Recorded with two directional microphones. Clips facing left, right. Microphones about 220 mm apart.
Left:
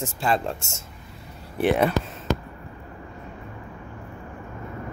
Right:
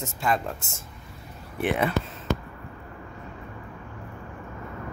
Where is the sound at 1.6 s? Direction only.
35° left (ahead or behind).